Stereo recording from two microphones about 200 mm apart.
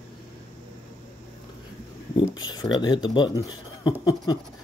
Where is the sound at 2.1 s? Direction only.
20° left (ahead or behind).